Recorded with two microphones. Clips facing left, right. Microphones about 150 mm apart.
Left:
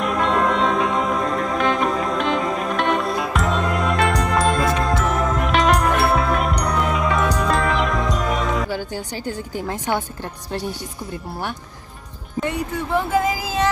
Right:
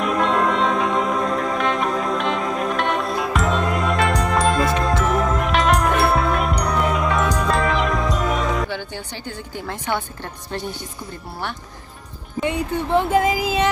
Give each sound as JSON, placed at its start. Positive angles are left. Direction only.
{"t": 0.0, "sound": "music", "side_deg": 0}
{"t": 9.2, "sound": "a woman's voice", "side_deg": 40}
{"t": 9.7, "sound": "a woman's voice", "side_deg": 10}
{"t": 12.4, "sound": "speech", "side_deg": -20}